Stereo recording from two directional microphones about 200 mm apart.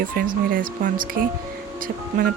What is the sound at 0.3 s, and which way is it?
Speech, 45° right (ahead or behind).